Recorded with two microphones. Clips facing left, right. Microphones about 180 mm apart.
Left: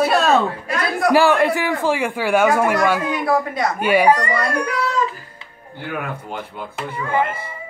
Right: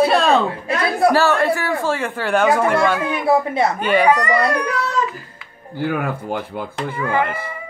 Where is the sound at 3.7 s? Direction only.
10° left (ahead or behind).